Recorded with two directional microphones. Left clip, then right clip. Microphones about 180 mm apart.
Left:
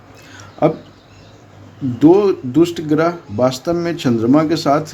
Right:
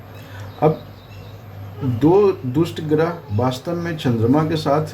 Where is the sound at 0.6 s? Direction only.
50° left (ahead or behind).